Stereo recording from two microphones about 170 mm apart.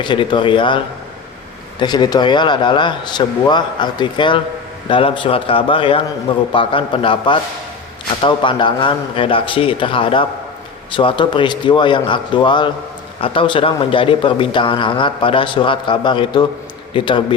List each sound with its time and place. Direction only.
0.0 s a man's voice: 30° left (ahead or behind)
1.8 s a man's voice: 25° left (ahead or behind)